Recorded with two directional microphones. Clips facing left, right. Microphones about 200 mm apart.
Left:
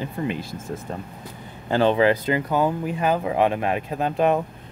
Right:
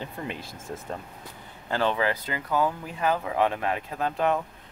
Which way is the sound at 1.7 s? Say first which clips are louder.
Left 8 dB; 20° left (ahead or behind).